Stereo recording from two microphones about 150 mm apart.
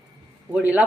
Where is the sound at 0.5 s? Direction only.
10° right (ahead or behind).